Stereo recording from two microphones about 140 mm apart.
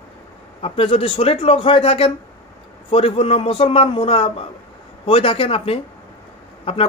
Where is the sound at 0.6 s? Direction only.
45° left (ahead or behind).